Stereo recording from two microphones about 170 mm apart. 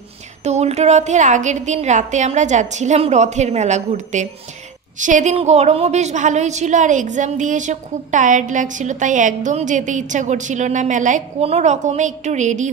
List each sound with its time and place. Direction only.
0.4 s a woman's voice: 40° right (ahead or behind)